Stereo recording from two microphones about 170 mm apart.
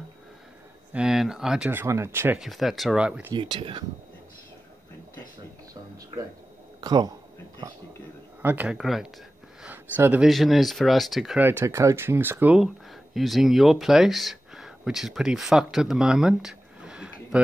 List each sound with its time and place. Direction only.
0.9 s speech: 5° right (ahead or behind)
3.3 s speech: 25° right (ahead or behind)
6.8 s speech: 25° right (ahead or behind)
8.4 s speech: 10° right (ahead or behind)
9.6 s a sound: 10° right (ahead or behind)
10.2 s speech: centre (ahead or behind)
11.4 s speech: 15° right (ahead or behind)